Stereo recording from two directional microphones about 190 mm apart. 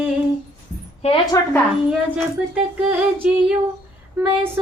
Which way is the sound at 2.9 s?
10° right (ahead or behind).